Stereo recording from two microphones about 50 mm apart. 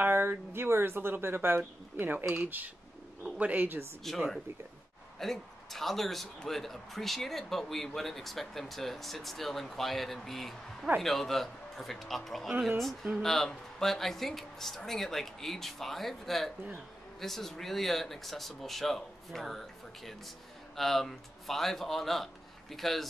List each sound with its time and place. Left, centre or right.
0.1 s speech: right
2.3 s speech: right
4.0 s a man's voice: centre